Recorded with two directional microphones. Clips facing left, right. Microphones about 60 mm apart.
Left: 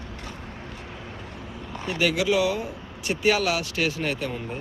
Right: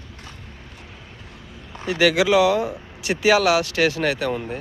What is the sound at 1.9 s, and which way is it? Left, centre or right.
Speech, right.